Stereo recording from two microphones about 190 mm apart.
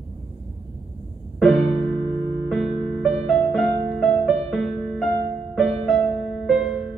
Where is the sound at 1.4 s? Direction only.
Centre (ahead or behind).